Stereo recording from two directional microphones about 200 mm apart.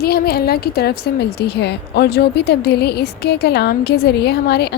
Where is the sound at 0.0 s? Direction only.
50° left (ahead or behind).